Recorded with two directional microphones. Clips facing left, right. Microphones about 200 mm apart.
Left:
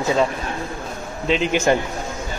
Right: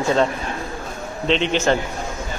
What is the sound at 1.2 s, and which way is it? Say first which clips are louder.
Speech: even; 5° left (ahead or behind).